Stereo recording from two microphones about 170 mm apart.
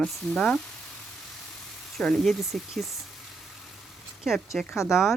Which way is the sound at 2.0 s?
5° left (ahead or behind).